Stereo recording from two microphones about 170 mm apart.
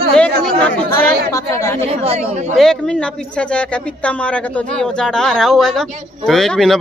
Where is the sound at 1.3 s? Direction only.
20° left (ahead or behind).